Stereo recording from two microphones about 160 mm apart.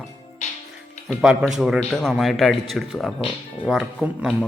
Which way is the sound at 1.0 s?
5° right (ahead or behind).